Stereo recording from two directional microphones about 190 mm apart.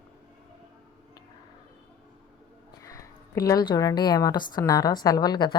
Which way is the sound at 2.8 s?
15° left (ahead or behind).